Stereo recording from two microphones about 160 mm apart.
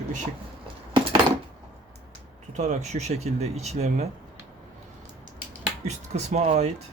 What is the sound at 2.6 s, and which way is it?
Speech, 45° right (ahead or behind).